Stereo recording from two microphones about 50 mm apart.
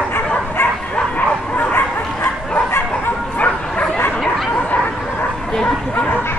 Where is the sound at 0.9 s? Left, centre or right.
Left.